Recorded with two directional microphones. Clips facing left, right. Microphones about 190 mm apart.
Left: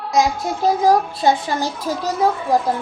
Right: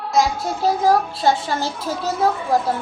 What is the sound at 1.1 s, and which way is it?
Speech, 15° left (ahead or behind).